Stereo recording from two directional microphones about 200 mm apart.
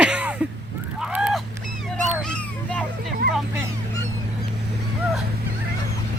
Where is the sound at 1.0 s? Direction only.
5° right (ahead or behind).